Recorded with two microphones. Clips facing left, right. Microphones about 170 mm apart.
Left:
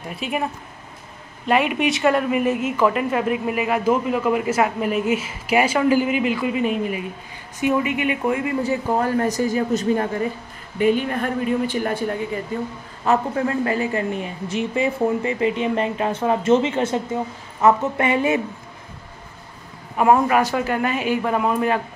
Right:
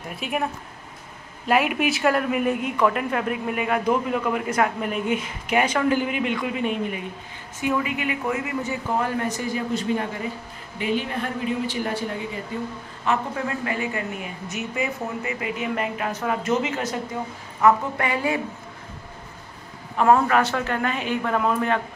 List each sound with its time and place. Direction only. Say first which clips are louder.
0.1 s speech: left 2 dB; centre (ahead or behind)
1.5 s speech: left 2 dB; 5° right (ahead or behind)
7.6 s speech: left 4 dB; 20° left (ahead or behind)
8.6 s a man's voice: left 4 dB; 40° left (ahead or behind)
13.0 s a man's voice: left 5 dB; 40° left (ahead or behind); by 18.4 s 20° left (ahead or behind)
20.0 s speech: left 2 dB; 10° left (ahead or behind)